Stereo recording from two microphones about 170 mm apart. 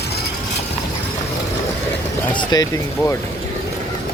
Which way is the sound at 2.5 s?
20° left (ahead or behind).